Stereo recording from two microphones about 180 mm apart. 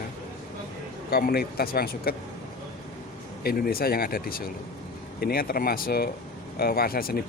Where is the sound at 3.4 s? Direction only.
55° left (ahead or behind).